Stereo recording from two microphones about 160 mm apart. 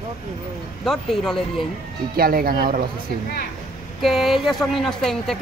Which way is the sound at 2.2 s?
70° right (ahead or behind).